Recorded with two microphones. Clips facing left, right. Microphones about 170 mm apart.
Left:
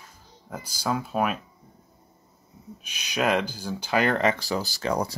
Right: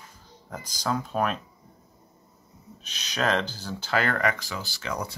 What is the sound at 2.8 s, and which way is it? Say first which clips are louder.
Speech: left 2 dB; 10° left (ahead or behind).